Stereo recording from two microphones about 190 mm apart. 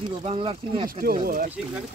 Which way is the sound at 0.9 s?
50° right (ahead or behind).